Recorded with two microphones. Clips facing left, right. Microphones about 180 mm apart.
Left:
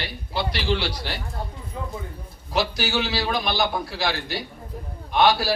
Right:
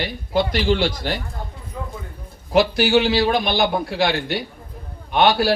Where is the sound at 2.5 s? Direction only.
55° right (ahead or behind).